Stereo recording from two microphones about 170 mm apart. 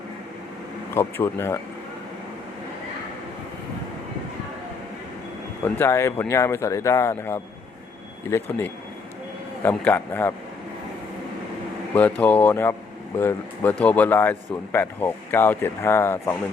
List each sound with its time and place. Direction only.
0.9 s speech: 15° left (ahead or behind)
5.6 s speech: 15° left (ahead or behind)
11.9 s speech: 10° left (ahead or behind)